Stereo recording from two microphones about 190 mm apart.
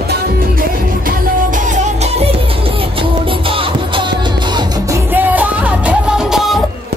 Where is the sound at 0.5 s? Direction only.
45° right (ahead or behind); by 6.6 s centre (ahead or behind).